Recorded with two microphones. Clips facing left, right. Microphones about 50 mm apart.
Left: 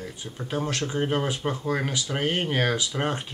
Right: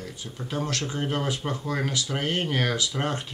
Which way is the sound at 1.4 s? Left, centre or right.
Centre.